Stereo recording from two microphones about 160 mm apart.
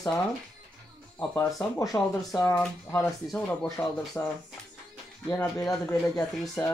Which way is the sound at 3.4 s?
10° left (ahead or behind).